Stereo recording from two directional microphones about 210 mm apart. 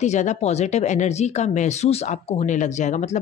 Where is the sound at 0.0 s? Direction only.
35° left (ahead or behind).